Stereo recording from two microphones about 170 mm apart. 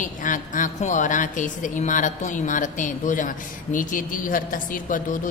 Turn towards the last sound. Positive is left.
turn(degrees=50)  # may be behind; listen again after turning